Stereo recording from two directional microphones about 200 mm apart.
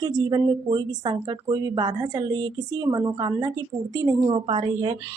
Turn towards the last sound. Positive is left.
turn(degrees=-25)  # may be behind; listen again after turning